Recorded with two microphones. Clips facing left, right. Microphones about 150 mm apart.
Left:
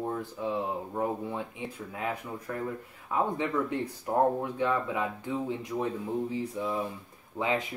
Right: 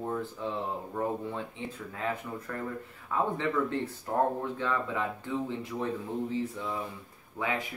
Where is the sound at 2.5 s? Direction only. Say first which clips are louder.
Left 4 dB; 15° left (ahead or behind).